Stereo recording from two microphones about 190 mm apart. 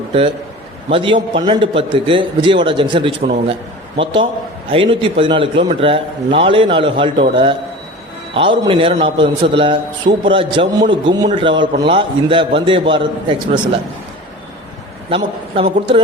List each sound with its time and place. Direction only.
0.9 s a man's voice: 30° right (ahead or behind)
8.4 s a man's voice: 25° right (ahead or behind)
15.1 s a man's voice: 30° right (ahead or behind)